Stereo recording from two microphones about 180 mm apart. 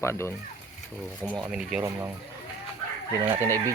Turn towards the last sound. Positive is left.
turn(degrees=-15)  # may be behind; listen again after turning